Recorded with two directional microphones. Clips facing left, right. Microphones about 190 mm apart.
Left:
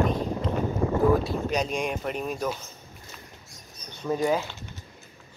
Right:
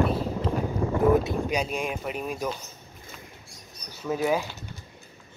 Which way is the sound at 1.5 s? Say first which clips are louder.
Left 1 dB; 5° right (ahead or behind).